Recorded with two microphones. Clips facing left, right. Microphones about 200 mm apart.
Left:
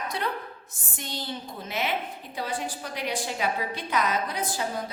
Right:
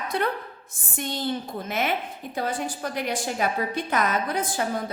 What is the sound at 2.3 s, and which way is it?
A woman's voice, 50° right (ahead or behind).